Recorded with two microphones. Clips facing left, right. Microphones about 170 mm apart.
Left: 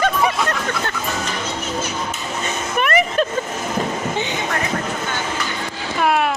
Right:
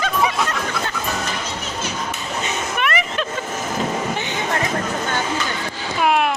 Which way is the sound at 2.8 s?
40° left (ahead or behind).